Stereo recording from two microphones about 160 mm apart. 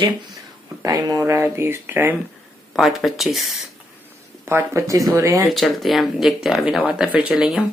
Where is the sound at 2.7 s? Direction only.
Centre (ahead or behind).